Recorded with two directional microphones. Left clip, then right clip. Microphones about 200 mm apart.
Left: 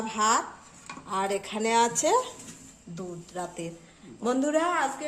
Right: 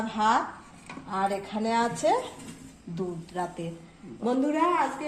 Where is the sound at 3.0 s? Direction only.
20° left (ahead or behind).